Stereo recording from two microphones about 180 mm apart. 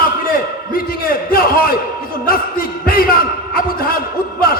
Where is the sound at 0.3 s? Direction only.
55° left (ahead or behind).